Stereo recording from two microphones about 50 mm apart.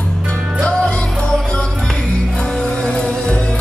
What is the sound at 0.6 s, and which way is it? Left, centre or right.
Music, left.